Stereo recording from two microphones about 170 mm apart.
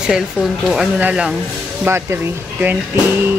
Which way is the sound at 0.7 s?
5° right (ahead or behind).